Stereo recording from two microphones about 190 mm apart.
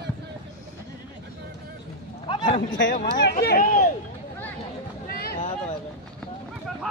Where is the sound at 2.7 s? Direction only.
70° left (ahead or behind).